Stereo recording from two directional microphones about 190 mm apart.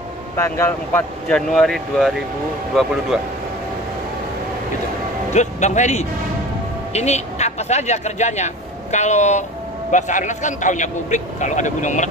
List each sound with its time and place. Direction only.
0.4 s speech: 10° left (ahead or behind)
5.3 s a man's voice: 40° left (ahead or behind)